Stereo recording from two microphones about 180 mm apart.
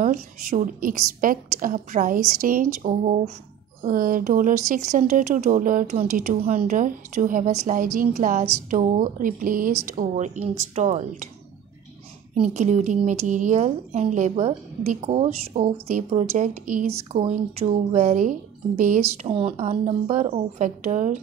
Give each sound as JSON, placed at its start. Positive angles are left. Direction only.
{"t": 0.0, "sound": "a woman's voice", "side_deg": -45}
{"t": 12.4, "sound": "a woman's voice", "side_deg": -40}
{"t": 19.2, "sound": "a woman's voice", "side_deg": -30}